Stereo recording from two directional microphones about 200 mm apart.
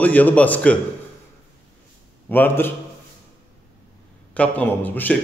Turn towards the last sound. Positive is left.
turn(degrees=10)  # may be behind; listen again after turning